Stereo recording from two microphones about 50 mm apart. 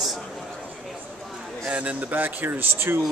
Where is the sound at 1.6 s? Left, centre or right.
Right.